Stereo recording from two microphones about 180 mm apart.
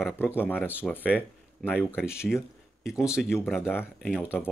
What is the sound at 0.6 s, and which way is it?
Speech, 10° right (ahead or behind).